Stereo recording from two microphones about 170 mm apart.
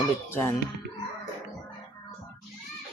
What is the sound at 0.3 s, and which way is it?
Speech, 15° left (ahead or behind).